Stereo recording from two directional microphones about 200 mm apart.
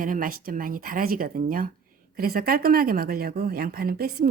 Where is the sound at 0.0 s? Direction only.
45° right (ahead or behind).